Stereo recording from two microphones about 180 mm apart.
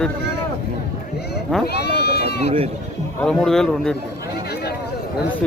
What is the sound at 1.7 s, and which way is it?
Sheep, 65° left (ahead or behind).